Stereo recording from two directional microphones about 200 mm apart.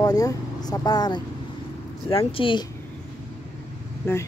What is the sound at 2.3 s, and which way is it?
Speech, 25° left (ahead or behind).